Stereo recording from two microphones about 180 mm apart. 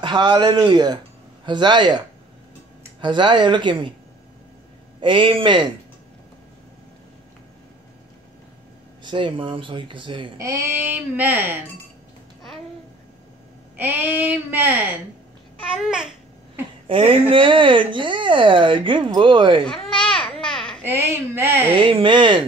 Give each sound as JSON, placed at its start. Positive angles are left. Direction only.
{"t": 0.0, "sound": "speech", "side_deg": -25}
{"t": 5.0, "sound": "speech", "side_deg": -30}
{"t": 9.0, "sound": "speech", "side_deg": -30}
{"t": 13.7, "sound": "speech", "side_deg": -10}
{"t": 15.7, "sound": "babbling", "side_deg": -5}
{"t": 16.8, "sound": "speech", "side_deg": -30}
{"t": 19.6, "sound": "babbling", "side_deg": 5}
{"t": 20.8, "sound": "speech", "side_deg": -15}
{"t": 21.7, "sound": "speech", "side_deg": -30}